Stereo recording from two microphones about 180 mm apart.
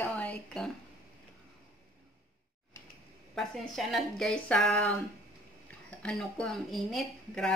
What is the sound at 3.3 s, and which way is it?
Speech, centre (ahead or behind).